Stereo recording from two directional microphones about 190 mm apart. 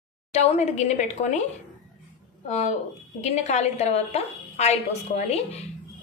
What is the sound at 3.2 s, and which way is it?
A woman's voice, 35° left (ahead or behind).